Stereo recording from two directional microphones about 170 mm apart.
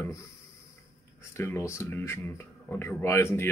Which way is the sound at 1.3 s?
15° left (ahead or behind).